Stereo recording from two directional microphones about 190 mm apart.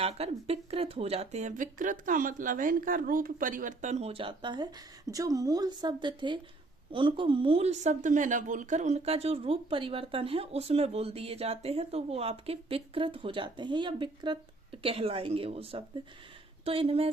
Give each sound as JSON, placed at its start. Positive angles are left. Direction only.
{"t": 0.0, "sound": "a woman's voice", "side_deg": -30}